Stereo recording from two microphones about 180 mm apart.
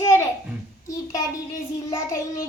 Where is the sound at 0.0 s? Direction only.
15° left (ahead or behind).